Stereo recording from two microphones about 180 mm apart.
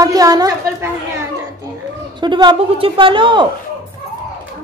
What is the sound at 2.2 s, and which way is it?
Speech, 25° right (ahead or behind).